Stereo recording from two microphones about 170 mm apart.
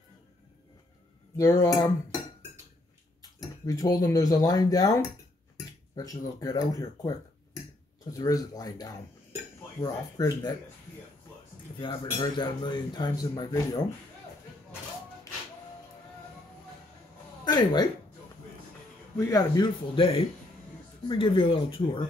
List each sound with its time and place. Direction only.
1.3 s speech: 20° left (ahead or behind)
3.6 s speech: 20° left (ahead or behind)
11.8 s speech: 25° left (ahead or behind)
17.5 s speech: 25° left (ahead or behind)
19.1 s speech: 20° left (ahead or behind)